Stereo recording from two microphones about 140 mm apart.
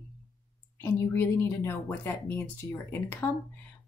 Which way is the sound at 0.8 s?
15° left (ahead or behind).